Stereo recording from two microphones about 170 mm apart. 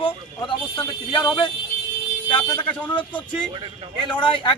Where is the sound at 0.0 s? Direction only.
30° left (ahead or behind).